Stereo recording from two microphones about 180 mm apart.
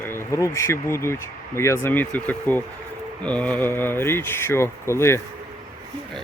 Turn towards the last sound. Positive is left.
turn(degrees=15)  # may be behind; listen again after turning